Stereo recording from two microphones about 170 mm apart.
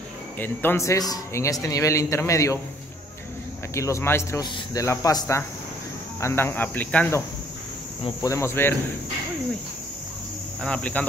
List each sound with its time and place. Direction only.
0.4 s speech: 10° left (ahead or behind)
3.7 s speech: 15° left (ahead or behind)
10.6 s speech: 5° left (ahead or behind)